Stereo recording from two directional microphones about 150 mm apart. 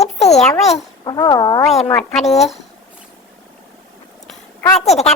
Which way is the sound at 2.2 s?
45° left (ahead or behind).